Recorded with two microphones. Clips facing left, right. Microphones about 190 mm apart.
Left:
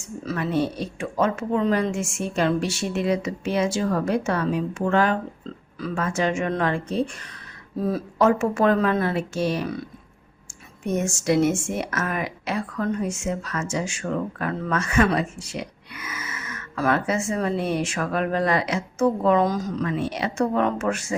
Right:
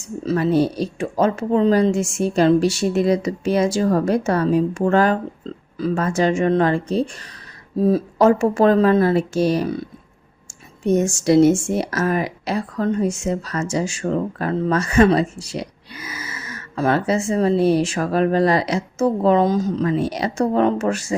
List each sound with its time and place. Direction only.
0.2 s speech: 30° right (ahead or behind)
10.8 s speech: 35° right (ahead or behind)